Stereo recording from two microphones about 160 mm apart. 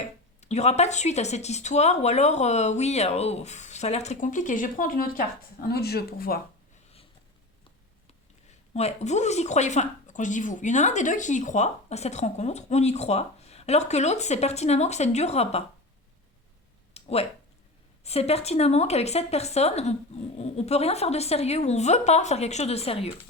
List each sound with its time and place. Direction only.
0.3 s speech: 45° left (ahead or behind); by 5.2 s 60° left (ahead or behind)
5.6 s speech: 80° left
8.7 s speech: 45° left (ahead or behind)
16.9 s a sound: 40° left (ahead or behind)
18.0 s a woman's voice: 40° left (ahead or behind)